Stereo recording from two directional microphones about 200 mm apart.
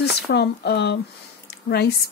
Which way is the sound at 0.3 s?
55° left (ahead or behind).